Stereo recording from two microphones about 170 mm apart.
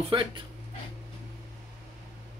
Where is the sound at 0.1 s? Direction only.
30° right (ahead or behind).